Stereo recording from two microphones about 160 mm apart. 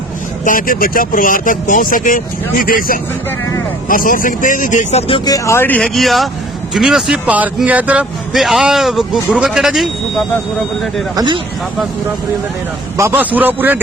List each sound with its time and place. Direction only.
0.4 s speech: 60° left (ahead or behind); by 10.2 s centre (ahead or behind)
11.1 s speech: 25° right (ahead or behind)
13.0 s a man's voice: 10° right (ahead or behind)